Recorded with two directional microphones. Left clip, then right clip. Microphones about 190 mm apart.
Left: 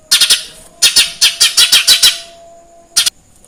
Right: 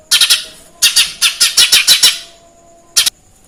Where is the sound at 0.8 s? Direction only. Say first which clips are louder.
Left 1 dB; 30° left (ahead or behind).